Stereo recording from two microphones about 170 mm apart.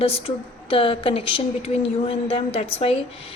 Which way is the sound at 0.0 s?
35° left (ahead or behind).